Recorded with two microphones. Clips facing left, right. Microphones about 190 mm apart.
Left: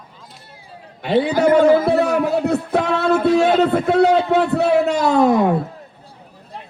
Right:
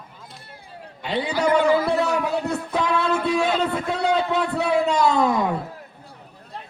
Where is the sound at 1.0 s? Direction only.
45° left (ahead or behind).